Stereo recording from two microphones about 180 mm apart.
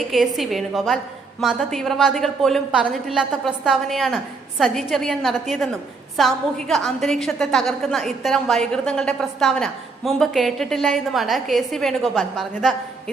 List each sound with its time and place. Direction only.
0.0 s a woman's voice: centre (ahead or behind)